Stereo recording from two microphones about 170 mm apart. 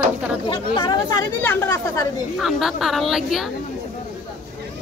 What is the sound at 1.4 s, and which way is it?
Speech, 10° left (ahead or behind).